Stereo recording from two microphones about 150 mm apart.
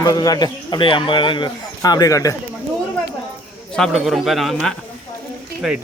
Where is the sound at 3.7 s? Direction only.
Centre (ahead or behind).